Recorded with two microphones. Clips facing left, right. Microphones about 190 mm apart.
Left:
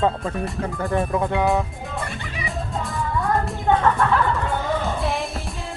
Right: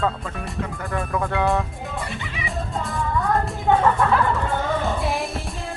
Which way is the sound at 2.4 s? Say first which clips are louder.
Even; centre (ahead or behind).